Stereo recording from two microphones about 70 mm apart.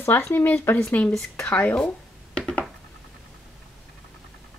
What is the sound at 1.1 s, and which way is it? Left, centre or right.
Speech, centre.